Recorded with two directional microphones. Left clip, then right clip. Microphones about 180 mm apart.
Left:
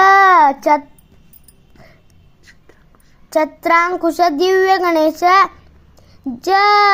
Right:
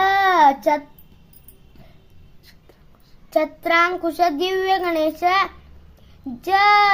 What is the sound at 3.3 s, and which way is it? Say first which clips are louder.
Child singing: left 5 dB; 25° left (ahead or behind).